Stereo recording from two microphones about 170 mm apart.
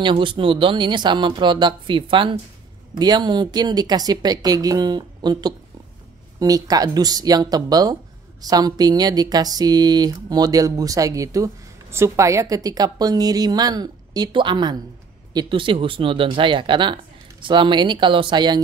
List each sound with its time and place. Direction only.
0.0 s speech: 30° right (ahead or behind)